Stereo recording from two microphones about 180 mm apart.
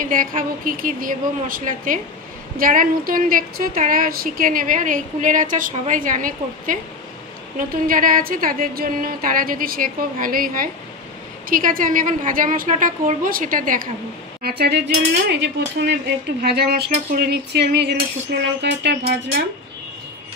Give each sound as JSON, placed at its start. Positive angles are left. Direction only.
{"t": 0.0, "sound": "speech", "side_deg": -50}
{"t": 15.2, "sound": "dishes", "side_deg": -70}